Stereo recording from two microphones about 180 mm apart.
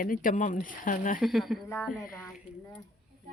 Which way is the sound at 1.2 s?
Centre (ahead or behind).